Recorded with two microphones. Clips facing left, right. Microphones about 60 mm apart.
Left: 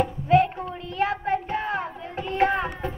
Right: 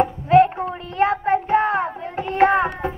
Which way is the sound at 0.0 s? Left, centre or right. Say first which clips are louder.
Right 5 dB; right.